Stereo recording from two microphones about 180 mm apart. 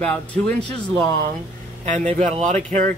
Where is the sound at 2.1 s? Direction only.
35° right (ahead or behind).